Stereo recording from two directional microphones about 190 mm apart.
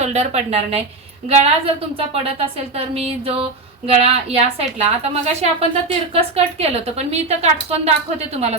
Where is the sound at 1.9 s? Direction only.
30° right (ahead or behind).